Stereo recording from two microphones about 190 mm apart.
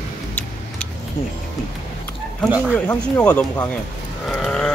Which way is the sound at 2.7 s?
5° left (ahead or behind).